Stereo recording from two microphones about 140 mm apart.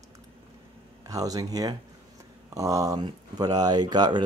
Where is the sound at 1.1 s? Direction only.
25° right (ahead or behind).